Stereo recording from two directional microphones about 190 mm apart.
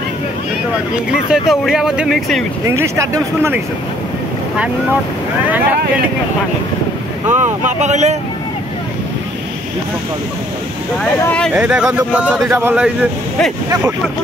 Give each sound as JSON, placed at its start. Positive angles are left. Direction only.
{"t": 1.5, "sound": "speech", "side_deg": 0}
{"t": 2.6, "sound": "speech", "side_deg": -15}
{"t": 7.2, "sound": "speech", "side_deg": -40}
{"t": 11.1, "sound": "speech", "side_deg": 10}
{"t": 11.6, "sound": "speech", "side_deg": -5}